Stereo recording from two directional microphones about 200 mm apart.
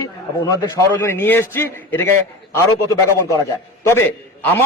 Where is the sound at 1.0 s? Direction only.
10° left (ahead or behind).